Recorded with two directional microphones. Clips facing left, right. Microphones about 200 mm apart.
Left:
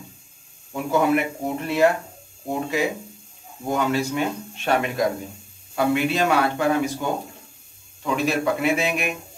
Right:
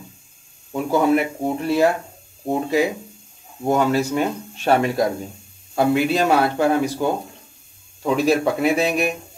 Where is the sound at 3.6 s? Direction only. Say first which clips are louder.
Right 4 dB; 40° right (ahead or behind).